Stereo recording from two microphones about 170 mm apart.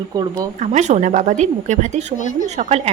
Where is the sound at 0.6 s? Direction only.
45° right (ahead or behind).